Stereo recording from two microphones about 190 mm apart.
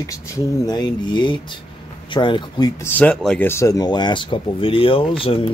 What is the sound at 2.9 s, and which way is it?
Speech, 5° left (ahead or behind).